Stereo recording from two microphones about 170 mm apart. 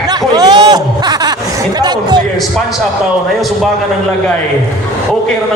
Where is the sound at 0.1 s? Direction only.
25° right (ahead or behind).